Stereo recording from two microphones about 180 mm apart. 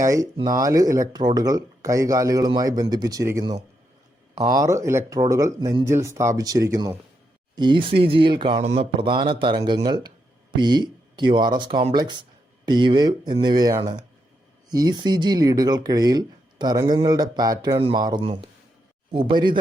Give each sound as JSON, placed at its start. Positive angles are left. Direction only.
{"t": 0.0, "sound": "speech", "side_deg": -20}